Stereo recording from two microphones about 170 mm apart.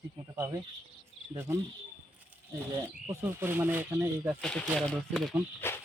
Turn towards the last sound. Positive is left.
turn(degrees=15)  # may be behind; listen again after turning